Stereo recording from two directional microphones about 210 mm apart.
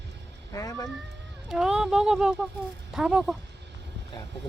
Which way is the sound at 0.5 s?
15° left (ahead or behind).